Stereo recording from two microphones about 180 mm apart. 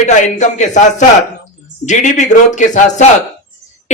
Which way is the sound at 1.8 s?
40° left (ahead or behind).